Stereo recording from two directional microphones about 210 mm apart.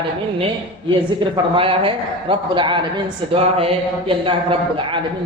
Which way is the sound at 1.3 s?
25° right (ahead or behind).